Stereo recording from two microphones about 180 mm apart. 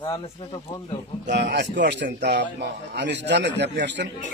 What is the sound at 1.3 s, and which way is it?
A man's voice, 70° right (ahead or behind).